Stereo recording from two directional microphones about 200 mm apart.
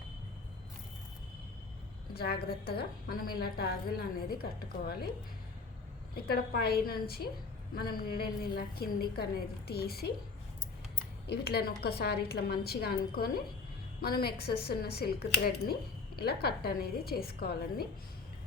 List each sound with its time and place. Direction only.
2.1 s a woman's voice: 50° left (ahead or behind)
6.1 s a woman's voice: 50° left (ahead or behind)
11.3 s a woman's voice: 55° left (ahead or behind)